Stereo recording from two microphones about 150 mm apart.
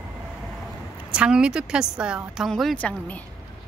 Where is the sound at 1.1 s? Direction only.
5° right (ahead or behind); by 3.2 s 10° left (ahead or behind).